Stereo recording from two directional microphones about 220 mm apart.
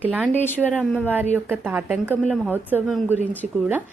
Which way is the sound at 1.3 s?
10° right (ahead or behind).